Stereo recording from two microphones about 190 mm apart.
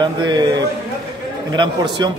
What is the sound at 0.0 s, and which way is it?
Speech, 25° right (ahead or behind).